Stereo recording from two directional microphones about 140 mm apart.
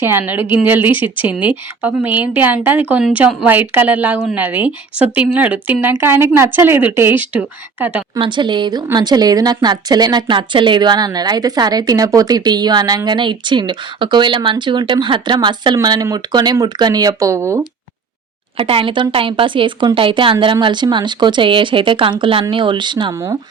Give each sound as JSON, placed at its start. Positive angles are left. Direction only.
{"t": 0.0, "sound": "a woman's voice", "side_deg": -15}
{"t": 8.2, "sound": "a woman's voice", "side_deg": -35}
{"t": 18.5, "sound": "speech", "side_deg": -40}